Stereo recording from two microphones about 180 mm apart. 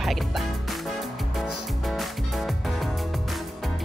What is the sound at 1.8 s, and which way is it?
Music, centre (ahead or behind).